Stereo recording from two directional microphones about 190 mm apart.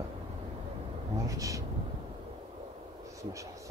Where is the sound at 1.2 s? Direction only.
15° right (ahead or behind).